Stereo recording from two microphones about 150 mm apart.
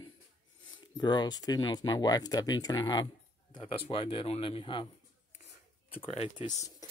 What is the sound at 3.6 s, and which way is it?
Speech, 40° left (ahead or behind).